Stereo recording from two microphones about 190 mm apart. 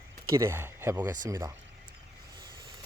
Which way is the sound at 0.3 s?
15° right (ahead or behind).